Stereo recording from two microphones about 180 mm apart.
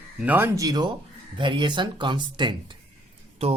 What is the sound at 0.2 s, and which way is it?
Speech, 10° right (ahead or behind).